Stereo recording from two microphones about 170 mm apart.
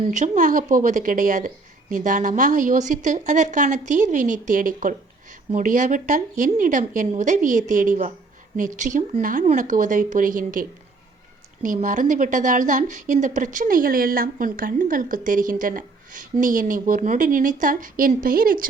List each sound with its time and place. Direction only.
0.0 s a woman's voice: 45° right (ahead or behind)